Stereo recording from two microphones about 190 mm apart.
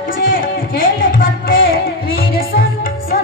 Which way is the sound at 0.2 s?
50° left (ahead or behind).